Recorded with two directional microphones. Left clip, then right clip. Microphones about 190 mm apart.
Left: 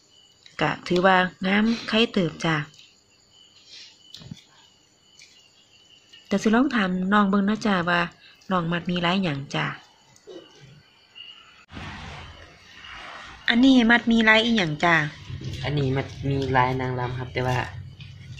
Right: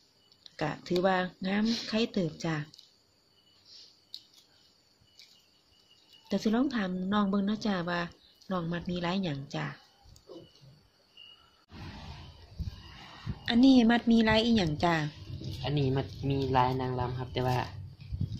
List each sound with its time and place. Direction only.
0.6 s speech: centre (ahead or behind)
6.2 s speech: centre (ahead or behind)
13.5 s a woman's voice: 25° right (ahead or behind)
15.6 s speech: 15° right (ahead or behind)